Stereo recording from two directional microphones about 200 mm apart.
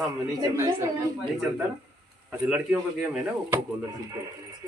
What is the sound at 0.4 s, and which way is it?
Speech, 15° right (ahead or behind).